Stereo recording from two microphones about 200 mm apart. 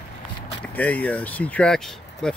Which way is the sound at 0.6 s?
5° left (ahead or behind).